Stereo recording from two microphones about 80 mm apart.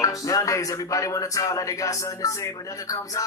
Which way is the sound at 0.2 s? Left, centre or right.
Left.